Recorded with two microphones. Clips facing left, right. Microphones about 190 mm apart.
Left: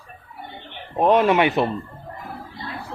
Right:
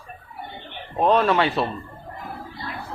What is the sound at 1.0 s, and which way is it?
Speech, 15° left (ahead or behind).